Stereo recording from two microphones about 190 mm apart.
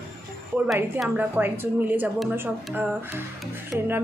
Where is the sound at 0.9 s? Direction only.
10° right (ahead or behind).